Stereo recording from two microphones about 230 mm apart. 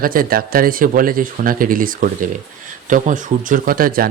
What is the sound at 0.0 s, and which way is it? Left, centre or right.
Speech, right.